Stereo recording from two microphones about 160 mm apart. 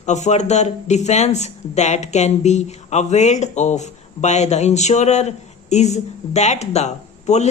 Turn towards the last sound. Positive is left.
turn(degrees=45)  # may be behind; listen again after turning